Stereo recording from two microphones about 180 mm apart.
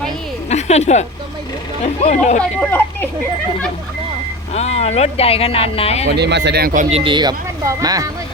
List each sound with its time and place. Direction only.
0.5 s a sound: 40° left (ahead or behind)
1.8 s speech: 40° left (ahead or behind)
2.4 s speech: 5° left (ahead or behind)
4.5 s speech: 35° left (ahead or behind)
6.1 s speech: 70° right (ahead or behind)
6.9 s speech: 25° right (ahead or behind)